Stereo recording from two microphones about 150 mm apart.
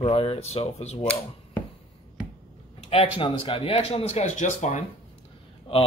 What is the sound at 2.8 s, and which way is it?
Speech, 40° left (ahead or behind).